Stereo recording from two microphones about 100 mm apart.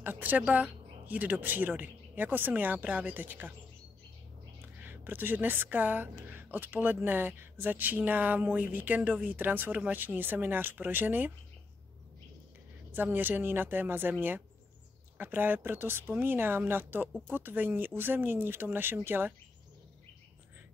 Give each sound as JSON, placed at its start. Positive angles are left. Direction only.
{"t": 0.0, "sound": "speech", "side_deg": -15}
{"t": 4.8, "sound": "a woman's voice", "side_deg": -20}
{"t": 12.9, "sound": "a woman's voice", "side_deg": -20}
{"t": 15.1, "sound": "a woman's voice", "side_deg": -20}